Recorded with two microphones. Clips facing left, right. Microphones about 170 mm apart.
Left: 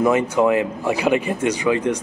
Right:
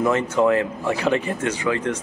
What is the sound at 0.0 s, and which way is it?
Speech, 15° left (ahead or behind).